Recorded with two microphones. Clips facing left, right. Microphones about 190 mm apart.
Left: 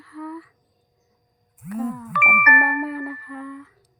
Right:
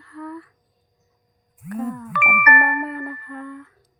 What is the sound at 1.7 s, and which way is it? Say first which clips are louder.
Speech: even; centre (ahead or behind).